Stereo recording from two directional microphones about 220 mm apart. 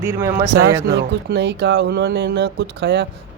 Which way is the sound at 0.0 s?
10° right (ahead or behind).